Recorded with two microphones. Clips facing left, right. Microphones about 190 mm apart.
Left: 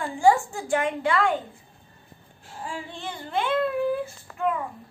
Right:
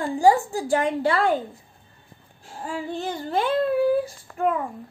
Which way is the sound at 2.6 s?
40° right (ahead or behind).